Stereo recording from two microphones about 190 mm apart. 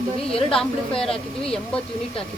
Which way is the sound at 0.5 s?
5° left (ahead or behind).